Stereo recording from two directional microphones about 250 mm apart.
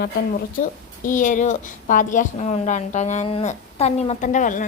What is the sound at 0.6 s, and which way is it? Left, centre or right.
A woman's voice, left.